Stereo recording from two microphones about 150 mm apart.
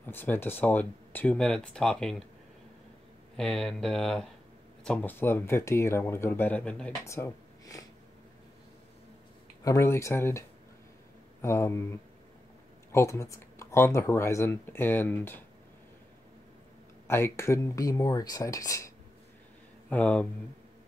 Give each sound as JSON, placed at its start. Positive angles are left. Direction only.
{"t": 0.0, "sound": "speech", "side_deg": 10}
{"t": 3.3, "sound": "speech", "side_deg": 5}
{"t": 7.1, "sound": "a sound", "side_deg": 20}
{"t": 9.6, "sound": "speech", "side_deg": 20}
{"t": 11.4, "sound": "speech", "side_deg": 20}
{"t": 12.9, "sound": "speech", "side_deg": 20}
{"t": 17.1, "sound": "speech", "side_deg": 20}
{"t": 19.9, "sound": "speech", "side_deg": 10}